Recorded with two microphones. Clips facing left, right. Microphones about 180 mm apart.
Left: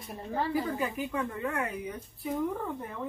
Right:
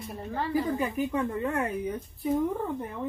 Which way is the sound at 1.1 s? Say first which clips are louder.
Right 4 dB; 25° right (ahead or behind).